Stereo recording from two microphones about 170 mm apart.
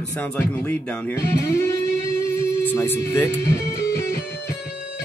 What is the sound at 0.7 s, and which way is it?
Speech, 15° left (ahead or behind).